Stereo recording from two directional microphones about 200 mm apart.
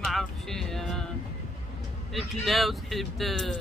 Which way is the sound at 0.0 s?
Centre (ahead or behind).